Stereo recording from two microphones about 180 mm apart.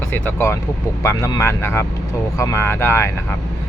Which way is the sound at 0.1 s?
10° left (ahead or behind).